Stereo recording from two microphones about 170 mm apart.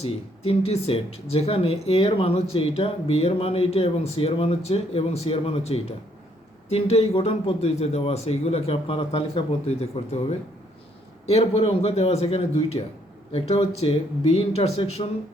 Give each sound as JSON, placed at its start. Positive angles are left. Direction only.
{"t": 0.0, "sound": "speech", "side_deg": 40}